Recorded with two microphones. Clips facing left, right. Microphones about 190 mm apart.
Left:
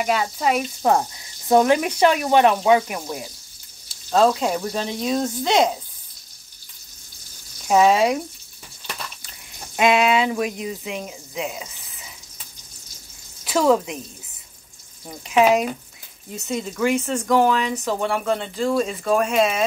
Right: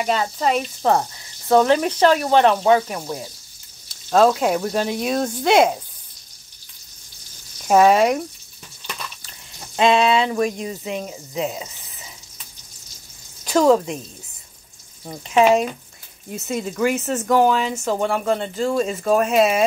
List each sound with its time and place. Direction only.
0.0 s speech: 5° left (ahead or behind)
4.1 s speech: 5° right (ahead or behind)
7.7 s speech: centre (ahead or behind)
9.8 s speech: 10° left (ahead or behind)
11.3 s frying: 35° right (ahead or behind)
13.4 s a sound: 5° left (ahead or behind)
15.2 s speech: centre (ahead or behind)